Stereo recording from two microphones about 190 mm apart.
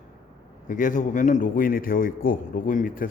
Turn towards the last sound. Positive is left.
turn(degrees=45)  # may be behind; listen again after turning